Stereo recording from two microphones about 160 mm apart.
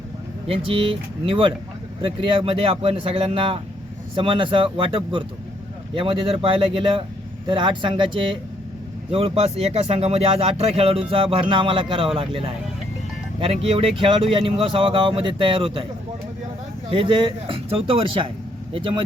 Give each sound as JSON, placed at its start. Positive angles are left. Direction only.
{"t": 0.4, "sound": "speech", "side_deg": -35}
{"t": 16.9, "sound": "speech", "side_deg": -30}